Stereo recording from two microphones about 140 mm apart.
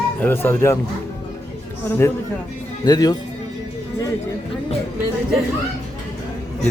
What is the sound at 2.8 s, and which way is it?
Speech, 30° left (ahead or behind).